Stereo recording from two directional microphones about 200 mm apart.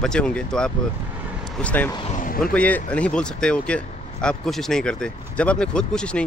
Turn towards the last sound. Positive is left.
turn(degrees=5)  # may be behind; listen again after turning